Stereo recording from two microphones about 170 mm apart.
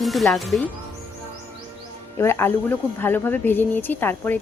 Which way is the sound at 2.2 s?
15° left (ahead or behind).